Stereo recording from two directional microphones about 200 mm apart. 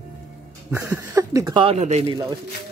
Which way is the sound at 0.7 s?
15° right (ahead or behind).